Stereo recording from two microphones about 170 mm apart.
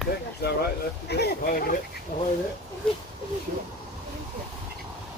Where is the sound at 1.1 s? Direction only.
70° left (ahead or behind).